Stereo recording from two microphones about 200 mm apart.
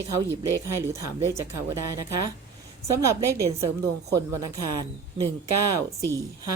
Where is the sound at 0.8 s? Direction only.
15° right (ahead or behind).